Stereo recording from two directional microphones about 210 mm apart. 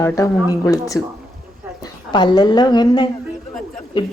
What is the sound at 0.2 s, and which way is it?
Speech, 15° left (ahead or behind).